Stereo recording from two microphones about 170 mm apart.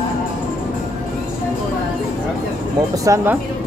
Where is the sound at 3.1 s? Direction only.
15° right (ahead or behind).